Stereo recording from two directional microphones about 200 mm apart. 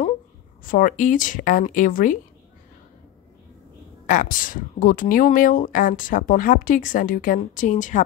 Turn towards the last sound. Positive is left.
turn(degrees=40)  # may be behind; listen again after turning